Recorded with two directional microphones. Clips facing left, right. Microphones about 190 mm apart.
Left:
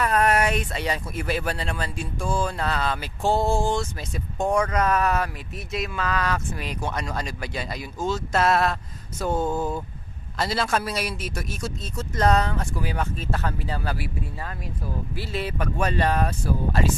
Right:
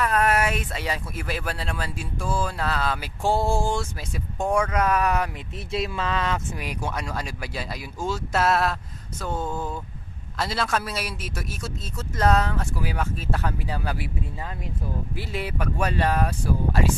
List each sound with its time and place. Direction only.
0.0 s speech: centre (ahead or behind)
5.7 s speech: 30° right (ahead or behind); by 8.7 s centre (ahead or behind)
9.2 s a sound: 15° left (ahead or behind)
10.3 s speech: centre (ahead or behind)
15.1 s speech: 15° right (ahead or behind)